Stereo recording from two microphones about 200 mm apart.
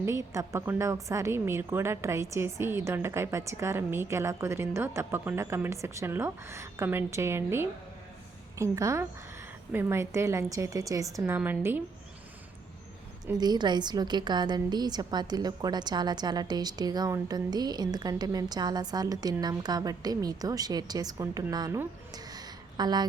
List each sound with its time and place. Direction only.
0.0 s a woman's voice: 15° right (ahead or behind)
13.2 s a woman's voice: 20° right (ahead or behind)